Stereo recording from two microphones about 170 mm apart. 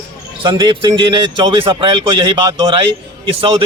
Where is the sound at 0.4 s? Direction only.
25° right (ahead or behind).